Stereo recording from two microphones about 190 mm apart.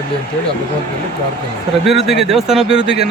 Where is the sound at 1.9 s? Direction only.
Centre (ahead or behind).